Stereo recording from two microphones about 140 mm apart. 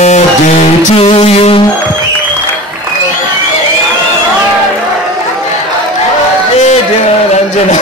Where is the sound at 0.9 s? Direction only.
40° left (ahead or behind).